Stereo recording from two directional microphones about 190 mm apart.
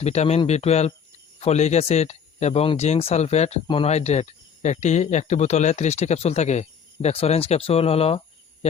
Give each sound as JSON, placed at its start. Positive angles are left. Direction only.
{"t": 0.0, "sound": "speech", "side_deg": 35}